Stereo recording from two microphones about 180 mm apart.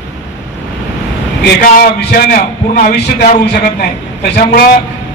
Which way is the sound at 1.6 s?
60° left (ahead or behind).